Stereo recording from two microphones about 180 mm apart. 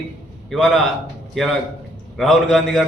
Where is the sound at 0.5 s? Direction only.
Centre (ahead or behind).